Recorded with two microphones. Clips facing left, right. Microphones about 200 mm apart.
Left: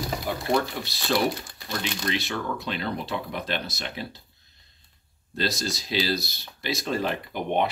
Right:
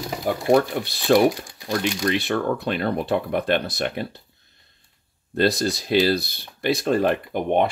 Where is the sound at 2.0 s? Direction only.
55° right (ahead or behind).